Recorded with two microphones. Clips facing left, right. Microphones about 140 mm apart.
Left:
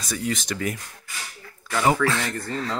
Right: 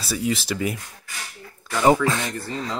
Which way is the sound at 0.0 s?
5° right (ahead or behind).